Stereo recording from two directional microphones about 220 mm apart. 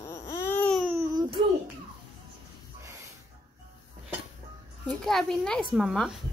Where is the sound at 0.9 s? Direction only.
20° right (ahead or behind).